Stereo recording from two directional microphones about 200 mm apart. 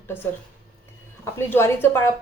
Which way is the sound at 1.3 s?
10° left (ahead or behind).